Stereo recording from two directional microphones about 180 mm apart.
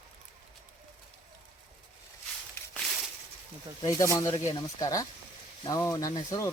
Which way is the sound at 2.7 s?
Centre (ahead or behind).